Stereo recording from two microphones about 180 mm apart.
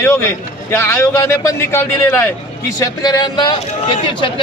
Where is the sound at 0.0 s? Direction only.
15° left (ahead or behind).